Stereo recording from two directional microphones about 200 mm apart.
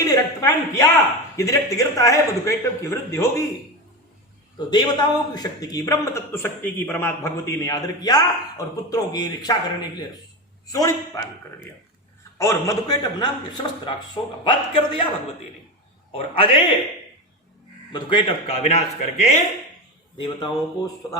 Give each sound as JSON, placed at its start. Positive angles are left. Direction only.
{"t": 0.0, "sound": "a sound", "side_deg": 15}
{"t": 1.4, "sound": "a man's voice", "side_deg": 15}
{"t": 4.5, "sound": "a man's voice", "side_deg": 20}
{"t": 10.7, "sound": "a man's voice", "side_deg": 15}
{"t": 12.4, "sound": "a man's voice", "side_deg": 15}
{"t": 16.1, "sound": "a man's voice", "side_deg": 25}
{"t": 17.9, "sound": "a man's voice", "side_deg": 25}
{"t": 20.1, "sound": "a man's voice", "side_deg": 20}